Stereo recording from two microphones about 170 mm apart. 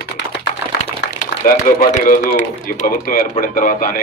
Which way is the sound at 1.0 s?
55° left (ahead or behind).